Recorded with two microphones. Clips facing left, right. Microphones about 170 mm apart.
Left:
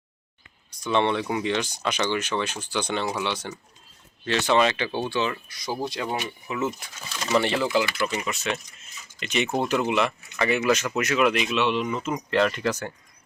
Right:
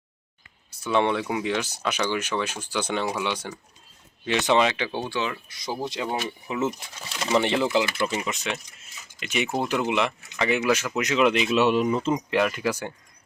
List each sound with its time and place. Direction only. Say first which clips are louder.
0.8 s speech: even; 10° right (ahead or behind)
5.5 s speech: left 1 dB; 25° right (ahead or behind)
9.2 s speech: left 1 dB; 10° right (ahead or behind); by 11.5 s 25° right (ahead or behind)
11.5 s speech: right 4 dB; 40° right (ahead or behind)
12.1 s speech: even; 10° right (ahead or behind)